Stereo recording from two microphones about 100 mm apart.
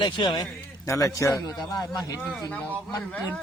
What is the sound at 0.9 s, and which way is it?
Speech, 30° left (ahead or behind).